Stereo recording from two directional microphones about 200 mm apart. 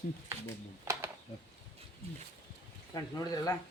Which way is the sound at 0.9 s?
15° right (ahead or behind).